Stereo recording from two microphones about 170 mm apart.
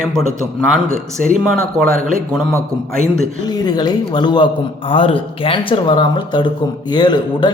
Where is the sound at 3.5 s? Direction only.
25° left (ahead or behind).